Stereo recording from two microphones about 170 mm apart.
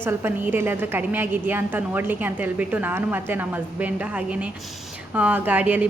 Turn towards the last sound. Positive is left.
turn(degrees=-10)  # may be behind; listen again after turning